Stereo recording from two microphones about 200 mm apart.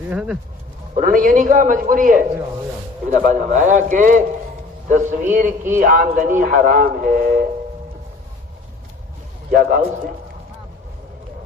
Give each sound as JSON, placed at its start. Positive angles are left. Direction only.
{"t": 0.1, "sound": "speech", "side_deg": -5}
{"t": 0.9, "sound": "a man's voice", "side_deg": -40}
{"t": 9.5, "sound": "a man's voice", "side_deg": -45}